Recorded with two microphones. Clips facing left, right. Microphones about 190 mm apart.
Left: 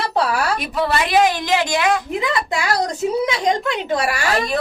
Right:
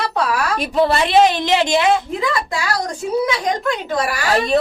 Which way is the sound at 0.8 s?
30° right (ahead or behind).